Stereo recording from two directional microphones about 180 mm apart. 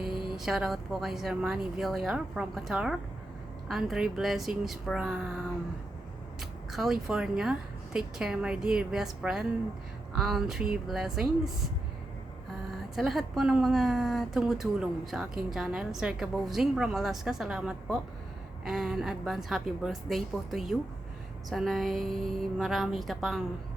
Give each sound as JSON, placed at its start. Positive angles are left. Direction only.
{"t": 0.3, "sound": "a woman's voice", "side_deg": 0}
{"t": 6.4, "sound": "a woman's voice", "side_deg": 0}
{"t": 13.0, "sound": "a woman's voice", "side_deg": 0}